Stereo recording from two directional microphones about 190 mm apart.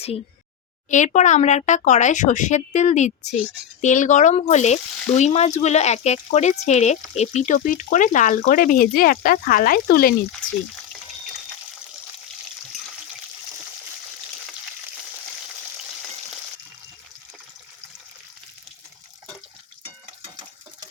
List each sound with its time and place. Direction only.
0.9 s speech: 40° left (ahead or behind)